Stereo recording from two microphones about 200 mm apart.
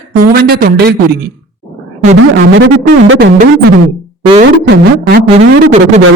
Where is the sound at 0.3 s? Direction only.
50° right (ahead or behind).